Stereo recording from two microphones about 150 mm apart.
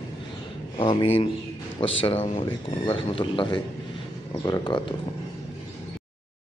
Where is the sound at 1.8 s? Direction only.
35° left (ahead or behind).